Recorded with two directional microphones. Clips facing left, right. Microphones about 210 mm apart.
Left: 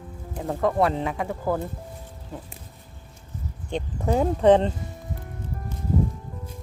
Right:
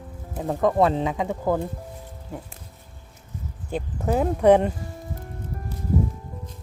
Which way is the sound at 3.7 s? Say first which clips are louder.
Even; 5° right (ahead or behind).